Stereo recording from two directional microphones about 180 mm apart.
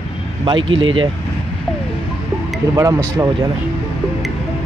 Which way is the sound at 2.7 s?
15° right (ahead or behind).